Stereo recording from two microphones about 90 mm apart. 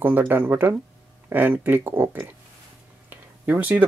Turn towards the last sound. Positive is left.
turn(degrees=-20)  # may be behind; listen again after turning